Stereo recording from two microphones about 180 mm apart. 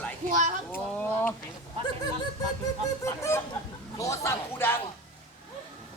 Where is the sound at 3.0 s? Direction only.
15° left (ahead or behind).